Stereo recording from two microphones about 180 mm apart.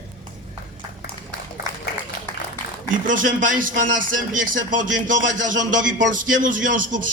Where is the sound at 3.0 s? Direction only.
45° right (ahead or behind).